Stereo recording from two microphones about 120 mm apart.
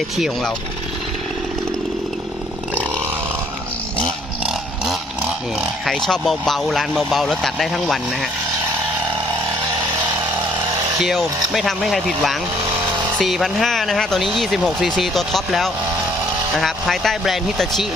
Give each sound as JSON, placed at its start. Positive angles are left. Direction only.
{"t": 5.5, "sound": "speech", "side_deg": 0}
{"t": 11.0, "sound": "speech", "side_deg": 0}